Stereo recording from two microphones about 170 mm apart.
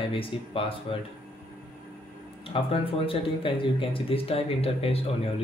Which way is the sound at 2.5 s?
30° left (ahead or behind).